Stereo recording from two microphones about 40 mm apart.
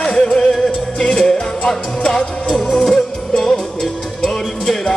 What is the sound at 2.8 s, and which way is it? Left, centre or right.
Music, centre.